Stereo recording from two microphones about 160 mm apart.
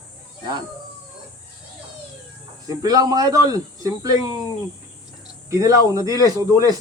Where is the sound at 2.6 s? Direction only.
25° right (ahead or behind).